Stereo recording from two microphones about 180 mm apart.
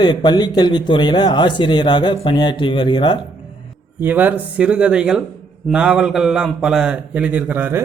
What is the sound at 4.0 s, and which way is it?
A man's voice, 10° right (ahead or behind).